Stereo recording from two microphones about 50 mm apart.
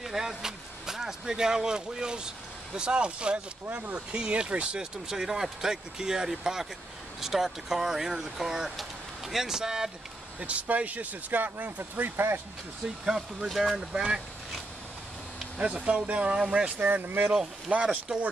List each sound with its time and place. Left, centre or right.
0.0 s speech: centre
5.0 s speech: centre
10.4 s speech: right
13.0 s speech: centre
15.6 s speech: right
16.8 s speech: right
17.8 s speech: centre